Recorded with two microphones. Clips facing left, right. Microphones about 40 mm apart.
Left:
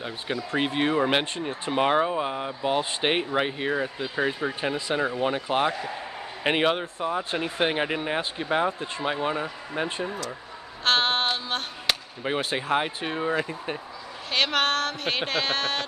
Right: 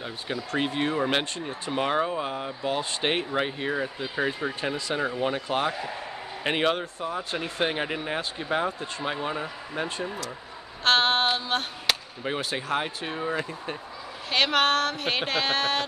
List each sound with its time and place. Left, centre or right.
0.5 s speech: centre
4.6 s speech: centre
10.8 s a sound: centre
12.2 s speech: centre
14.3 s speech: centre